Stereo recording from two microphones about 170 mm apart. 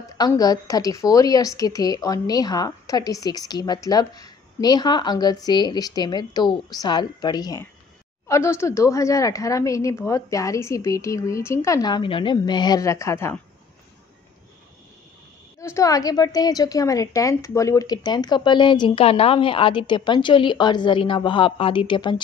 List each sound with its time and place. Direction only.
0.2 s a woman's voice: 20° left (ahead or behind)
15.6 s a woman's voice: 20° left (ahead or behind)